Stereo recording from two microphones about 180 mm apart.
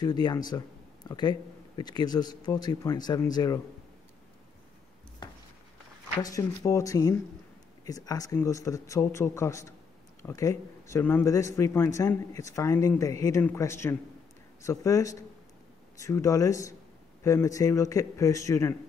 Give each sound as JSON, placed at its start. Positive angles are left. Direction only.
{"t": 0.0, "sound": "speech", "side_deg": 25}
{"t": 5.2, "sound": "a sound", "side_deg": 25}
{"t": 6.2, "sound": "speech", "side_deg": 20}